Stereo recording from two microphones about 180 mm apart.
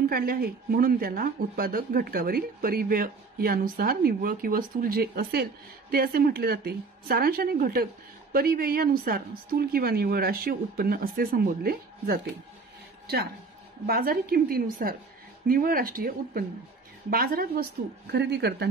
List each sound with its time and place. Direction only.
0.1 s a woman's voice: 55° right (ahead or behind)